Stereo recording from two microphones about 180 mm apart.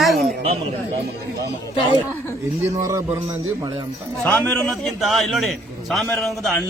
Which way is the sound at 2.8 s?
15° right (ahead or behind).